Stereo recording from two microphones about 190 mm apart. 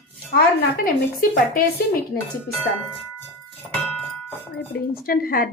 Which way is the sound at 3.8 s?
5° left (ahead or behind).